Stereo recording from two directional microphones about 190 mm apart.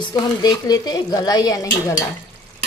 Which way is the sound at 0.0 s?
20° left (ahead or behind).